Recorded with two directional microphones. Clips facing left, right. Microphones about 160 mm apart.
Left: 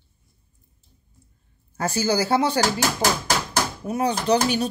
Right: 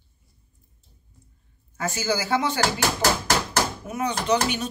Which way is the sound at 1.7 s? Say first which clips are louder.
Left 4 dB; 35° left (ahead or behind).